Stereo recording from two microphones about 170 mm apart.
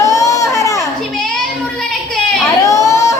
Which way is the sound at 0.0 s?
20° left (ahead or behind).